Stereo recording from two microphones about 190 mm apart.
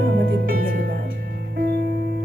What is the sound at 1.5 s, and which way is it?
Music, 60° right (ahead or behind).